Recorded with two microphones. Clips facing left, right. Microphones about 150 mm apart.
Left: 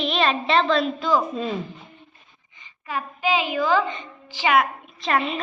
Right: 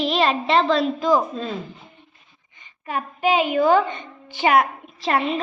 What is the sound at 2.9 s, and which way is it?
Speech, 50° right (ahead or behind).